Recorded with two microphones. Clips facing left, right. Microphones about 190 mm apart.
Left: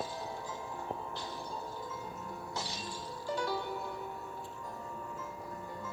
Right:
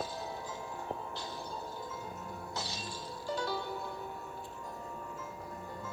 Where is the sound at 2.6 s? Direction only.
15° left (ahead or behind).